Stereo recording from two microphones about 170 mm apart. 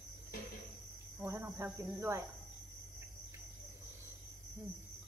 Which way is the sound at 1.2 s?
15° right (ahead or behind).